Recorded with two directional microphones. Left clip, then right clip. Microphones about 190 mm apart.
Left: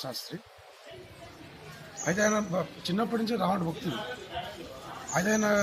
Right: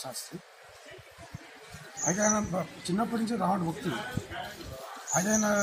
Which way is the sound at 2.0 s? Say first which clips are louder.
Left 1 dB; 35° left (ahead or behind).